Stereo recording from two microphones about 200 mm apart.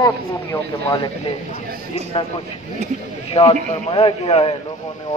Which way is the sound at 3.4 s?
30° left (ahead or behind).